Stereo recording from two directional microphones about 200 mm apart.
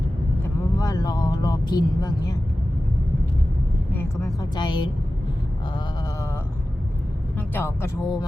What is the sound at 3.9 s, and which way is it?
Speech, 15° left (ahead or behind).